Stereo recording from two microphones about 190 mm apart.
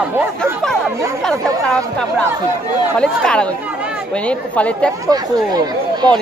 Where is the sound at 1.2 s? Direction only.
5° left (ahead or behind).